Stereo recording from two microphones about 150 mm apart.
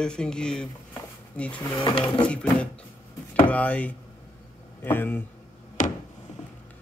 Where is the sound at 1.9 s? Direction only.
35° left (ahead or behind).